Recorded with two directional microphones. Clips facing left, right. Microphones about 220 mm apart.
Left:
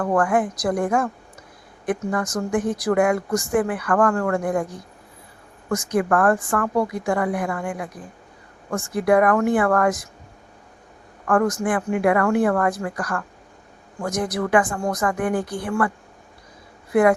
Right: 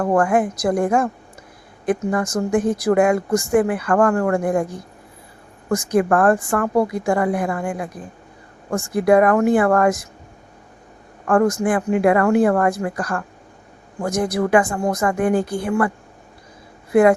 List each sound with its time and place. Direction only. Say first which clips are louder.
0.0 s speech: right 3 dB; 25° right (ahead or behind)
11.3 s speech: right 3 dB; 30° right (ahead or behind)
16.9 s speech: right 3 dB; 25° right (ahead or behind)